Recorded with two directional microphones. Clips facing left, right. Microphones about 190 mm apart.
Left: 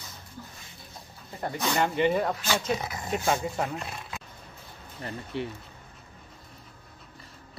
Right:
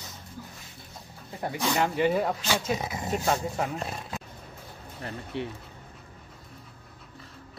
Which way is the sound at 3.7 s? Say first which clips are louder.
Right 3 dB; 35° right (ahead or behind).